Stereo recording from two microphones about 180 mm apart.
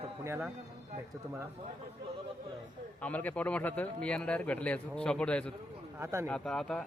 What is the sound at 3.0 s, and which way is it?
Speech, 10° left (ahead or behind).